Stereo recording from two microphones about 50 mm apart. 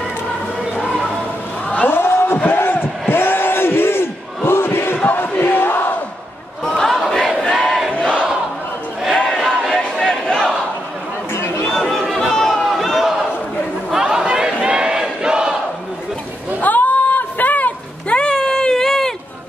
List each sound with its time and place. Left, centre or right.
1.9 s a sound: left
4.5 s crowd: left
4.9 s battle cry: left
6.8 s battle cry: centre
7.9 s crowd: centre
10.0 s crowd: centre
11.3 s chatter: left
11.7 s chatter: centre
12.6 s crowd: centre
13.9 s chatter: centre
14.2 s crowd: centre
16.6 s a sound: left; by 19.1 s centre